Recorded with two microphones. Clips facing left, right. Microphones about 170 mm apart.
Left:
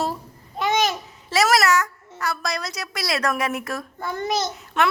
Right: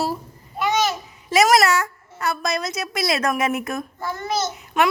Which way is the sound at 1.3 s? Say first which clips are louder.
Right 2 dB; 20° right (ahead or behind).